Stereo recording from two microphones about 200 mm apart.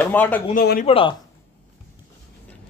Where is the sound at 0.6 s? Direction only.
50° left (ahead or behind).